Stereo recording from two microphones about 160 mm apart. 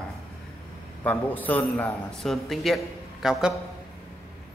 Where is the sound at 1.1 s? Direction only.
10° left (ahead or behind).